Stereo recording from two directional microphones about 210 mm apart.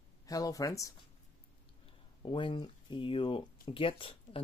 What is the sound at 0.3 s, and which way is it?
Speech, 15° left (ahead or behind).